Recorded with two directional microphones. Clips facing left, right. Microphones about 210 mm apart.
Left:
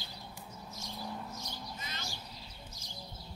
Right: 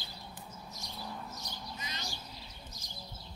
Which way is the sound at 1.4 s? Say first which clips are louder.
Left 1 dB; 15° right (ahead or behind).